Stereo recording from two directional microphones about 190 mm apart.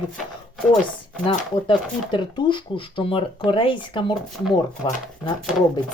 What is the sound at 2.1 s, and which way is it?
A woman's voice, 25° left (ahead or behind).